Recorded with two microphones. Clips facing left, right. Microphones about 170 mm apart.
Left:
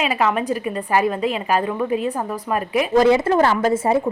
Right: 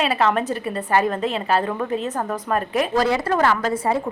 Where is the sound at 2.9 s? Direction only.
20° left (ahead or behind).